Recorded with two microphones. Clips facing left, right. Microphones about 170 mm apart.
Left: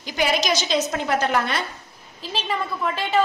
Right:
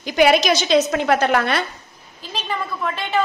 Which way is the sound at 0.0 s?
65° right (ahead or behind).